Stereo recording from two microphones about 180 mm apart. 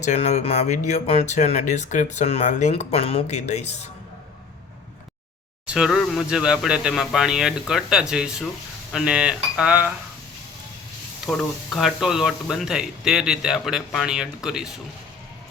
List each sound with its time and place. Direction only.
0.0 s speech: 40° left (ahead or behind)
5.6 s speech: 5° right (ahead or behind)
11.3 s speech: centre (ahead or behind)